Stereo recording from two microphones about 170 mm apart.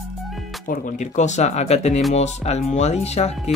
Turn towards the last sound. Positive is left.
turn(degrees=40)  # may be behind; listen again after turning